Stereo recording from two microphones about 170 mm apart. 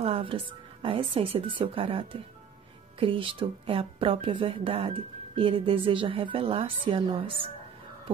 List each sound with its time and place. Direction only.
0.0 s a woman's voice: 35° right (ahead or behind)